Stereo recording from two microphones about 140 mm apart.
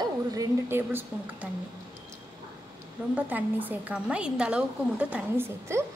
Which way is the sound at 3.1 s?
10° right (ahead or behind).